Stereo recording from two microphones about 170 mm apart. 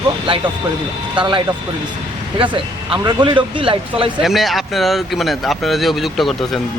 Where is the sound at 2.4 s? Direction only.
30° right (ahead or behind).